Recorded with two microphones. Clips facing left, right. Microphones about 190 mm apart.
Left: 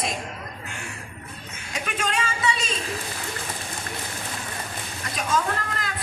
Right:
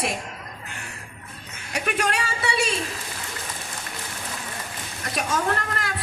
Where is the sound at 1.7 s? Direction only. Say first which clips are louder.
Right 3 dB; 70° right (ahead or behind).